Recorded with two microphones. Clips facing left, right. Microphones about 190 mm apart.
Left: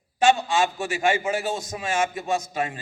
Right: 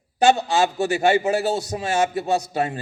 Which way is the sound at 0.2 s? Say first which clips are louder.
Right 3 dB; 40° right (ahead or behind).